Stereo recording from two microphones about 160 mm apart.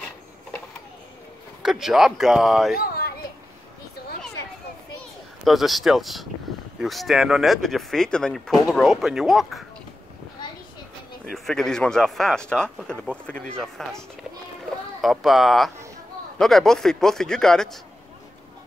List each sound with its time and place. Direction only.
1.6 s speech: centre (ahead or behind)
2.7 s children playing: 70° left (ahead or behind)
5.4 s speech: centre (ahead or behind)
11.3 s speech: centre (ahead or behind)